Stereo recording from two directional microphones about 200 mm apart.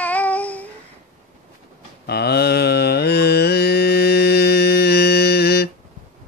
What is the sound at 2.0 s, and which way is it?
Mantra, 55° left (ahead or behind).